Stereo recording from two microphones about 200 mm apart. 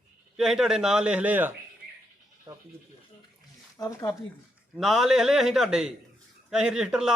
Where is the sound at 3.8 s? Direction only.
15° left (ahead or behind).